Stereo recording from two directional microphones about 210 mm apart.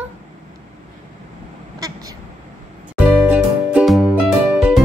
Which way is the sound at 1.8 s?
15° right (ahead or behind).